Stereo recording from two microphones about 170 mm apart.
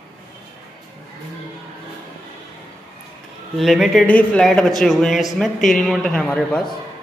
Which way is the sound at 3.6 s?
Centre (ahead or behind).